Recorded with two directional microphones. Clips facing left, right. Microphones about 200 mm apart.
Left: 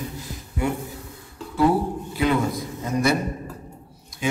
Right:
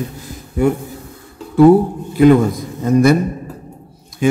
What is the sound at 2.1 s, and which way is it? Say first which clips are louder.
Speech: right 13 dB; 50° right (ahead or behind).